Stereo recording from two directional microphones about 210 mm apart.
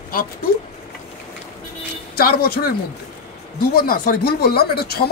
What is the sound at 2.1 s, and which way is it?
Speech, 45° left (ahead or behind).